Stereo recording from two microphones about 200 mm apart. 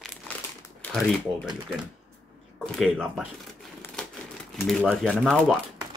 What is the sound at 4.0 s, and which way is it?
Crumpling, 5° left (ahead or behind).